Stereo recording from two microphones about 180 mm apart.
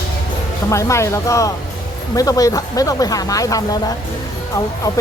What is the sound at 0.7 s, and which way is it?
Speech, 15° left (ahead or behind).